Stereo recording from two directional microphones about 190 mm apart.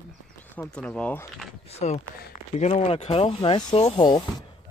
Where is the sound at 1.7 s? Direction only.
35° left (ahead or behind).